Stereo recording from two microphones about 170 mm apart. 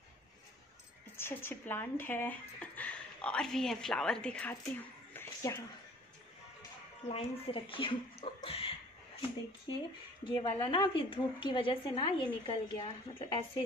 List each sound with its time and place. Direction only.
1.1 s speech: 15° left (ahead or behind)
7.1 s speech: 35° left (ahead or behind)
10.3 s a woman's voice: 25° left (ahead or behind)